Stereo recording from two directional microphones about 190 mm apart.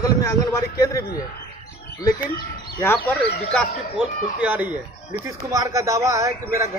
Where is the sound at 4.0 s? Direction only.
5° right (ahead or behind).